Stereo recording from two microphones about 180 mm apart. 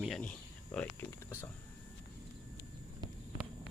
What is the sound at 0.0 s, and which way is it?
Cricket, 5° left (ahead or behind).